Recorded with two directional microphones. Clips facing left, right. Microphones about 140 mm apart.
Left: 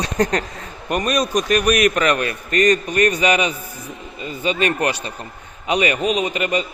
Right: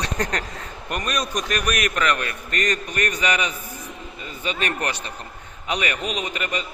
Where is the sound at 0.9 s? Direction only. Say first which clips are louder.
Left 7 dB; 15° left (ahead or behind).